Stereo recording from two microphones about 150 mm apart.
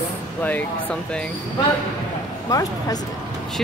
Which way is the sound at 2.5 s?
25° left (ahead or behind).